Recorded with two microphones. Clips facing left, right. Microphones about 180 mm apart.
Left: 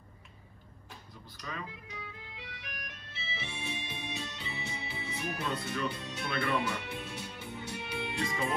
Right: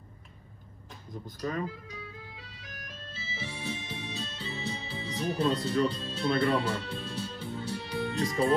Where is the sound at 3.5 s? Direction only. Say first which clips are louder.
Right 4 dB; 20° left (ahead or behind).